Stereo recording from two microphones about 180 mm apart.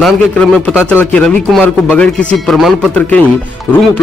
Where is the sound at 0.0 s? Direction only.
5° left (ahead or behind).